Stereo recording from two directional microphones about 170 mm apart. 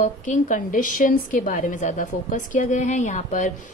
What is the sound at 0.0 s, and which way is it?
A woman's voice, 50° left (ahead or behind).